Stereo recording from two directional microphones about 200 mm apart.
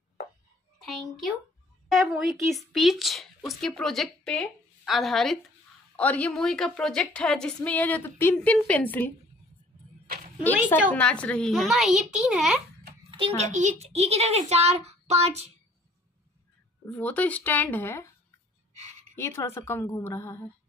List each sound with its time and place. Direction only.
1.9 s a woman's voice: centre (ahead or behind)
10.0 s a sound: 50° right (ahead or behind)
10.9 s speech: 5° left (ahead or behind)
13.4 s a child's voice: 35° right (ahead or behind)
16.8 s a woman's voice: 10° left (ahead or behind)
19.1 s a woman's voice: 15° left (ahead or behind)